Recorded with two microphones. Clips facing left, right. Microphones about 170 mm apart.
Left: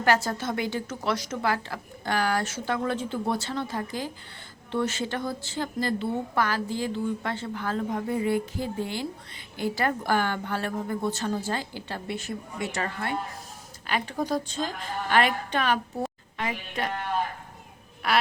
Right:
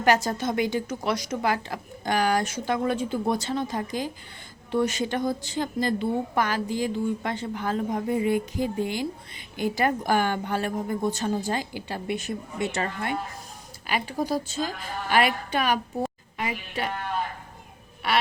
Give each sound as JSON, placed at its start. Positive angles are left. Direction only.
{"t": 0.0, "sound": "a woman's voice", "side_deg": -15}
{"t": 13.8, "sound": "a woman's voice", "side_deg": -10}
{"t": 16.0, "sound": "a sound", "side_deg": -5}
{"t": 18.0, "sound": "quack", "side_deg": 0}